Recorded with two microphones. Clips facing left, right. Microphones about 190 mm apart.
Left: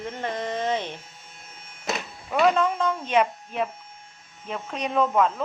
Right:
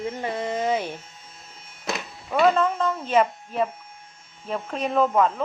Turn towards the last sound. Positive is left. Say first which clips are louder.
# right 1 dB
turn(degrees=0)  # may be behind; listen again after turning